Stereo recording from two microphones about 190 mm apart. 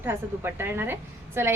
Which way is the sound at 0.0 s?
10° right (ahead or behind).